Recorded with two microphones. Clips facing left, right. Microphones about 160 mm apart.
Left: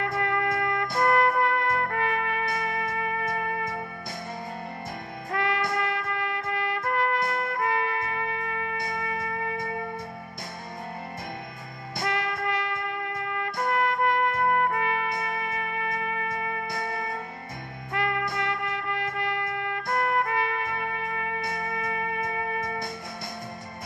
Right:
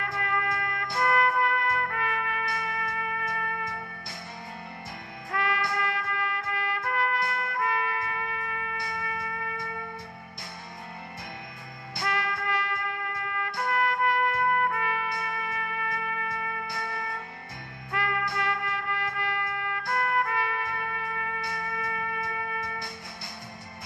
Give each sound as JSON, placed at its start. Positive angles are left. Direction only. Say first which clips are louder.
{"t": 0.2, "sound": "music", "louder": "left 3 dB", "side_deg": 30}
{"t": 1.0, "sound": "trumpet", "louder": "left 2 dB", "side_deg": 30}
{"t": 3.3, "sound": "music", "louder": "left 4 dB", "side_deg": 25}
{"t": 5.3, "sound": "music", "louder": "left 2 dB", "side_deg": 25}
{"t": 5.8, "sound": "trumpet", "louder": "left 2 dB", "side_deg": 25}
{"t": 8.8, "sound": "music", "louder": "left 4 dB", "side_deg": 25}
{"t": 12.0, "sound": "music", "louder": "left 2 dB", "side_deg": 20}
{"t": 13.7, "sound": "trumpet", "louder": "left 2 dB", "side_deg": 25}
{"t": 16.8, "sound": "music", "louder": "left 3 dB", "side_deg": 20}
{"t": 18.4, "sound": "music", "louder": "left 1 dB", "side_deg": 20}